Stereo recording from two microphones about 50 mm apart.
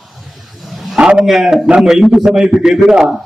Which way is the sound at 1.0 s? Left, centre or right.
Centre.